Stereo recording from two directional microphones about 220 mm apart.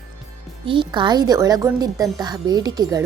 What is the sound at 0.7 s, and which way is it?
A woman's voice, 20° right (ahead or behind).